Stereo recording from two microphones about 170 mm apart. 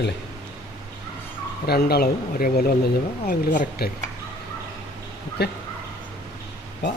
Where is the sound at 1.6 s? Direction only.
70° left (ahead or behind).